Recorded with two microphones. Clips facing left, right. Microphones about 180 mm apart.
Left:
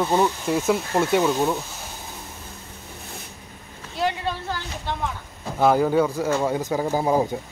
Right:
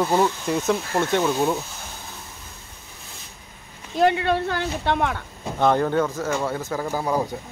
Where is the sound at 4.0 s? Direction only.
60° right (ahead or behind).